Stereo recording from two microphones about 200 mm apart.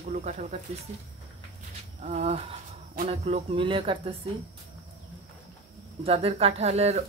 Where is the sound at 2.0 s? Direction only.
35° right (ahead or behind).